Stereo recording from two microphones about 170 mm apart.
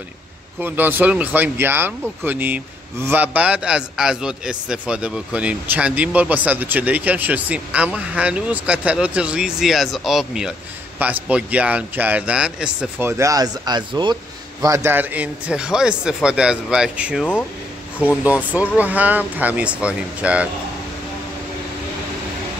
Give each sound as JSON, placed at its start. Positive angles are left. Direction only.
{"t": 0.6, "sound": "speech", "side_deg": -10}
{"t": 13.2, "sound": "a man's voice", "side_deg": -20}